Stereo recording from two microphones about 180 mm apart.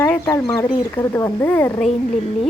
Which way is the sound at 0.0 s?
15° left (ahead or behind).